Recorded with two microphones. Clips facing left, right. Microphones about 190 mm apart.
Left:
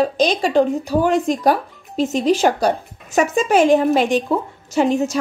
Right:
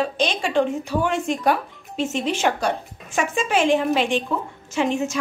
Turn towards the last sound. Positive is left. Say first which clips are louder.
# left 5 dB
turn(degrees=35)  # may be behind; listen again after turning